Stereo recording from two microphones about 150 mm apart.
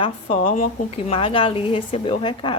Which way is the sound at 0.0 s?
40° left (ahead or behind).